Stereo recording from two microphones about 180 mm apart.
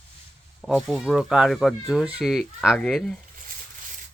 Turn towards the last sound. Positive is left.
turn(degrees=5)  # may be behind; listen again after turning